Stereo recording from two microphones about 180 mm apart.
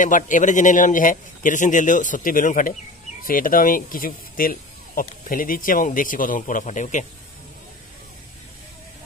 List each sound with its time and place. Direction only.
0.0 s speech: 45° left (ahead or behind)